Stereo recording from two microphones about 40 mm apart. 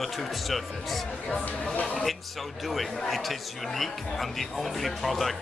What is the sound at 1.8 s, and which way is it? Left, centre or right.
Speech, left.